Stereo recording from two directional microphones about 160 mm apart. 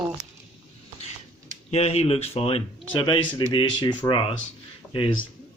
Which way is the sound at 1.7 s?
40° left (ahead or behind).